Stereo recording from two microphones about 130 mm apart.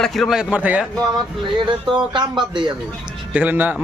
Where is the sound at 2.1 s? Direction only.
35° right (ahead or behind).